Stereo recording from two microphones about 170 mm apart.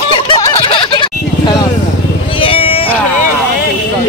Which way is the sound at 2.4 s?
35° left (ahead or behind).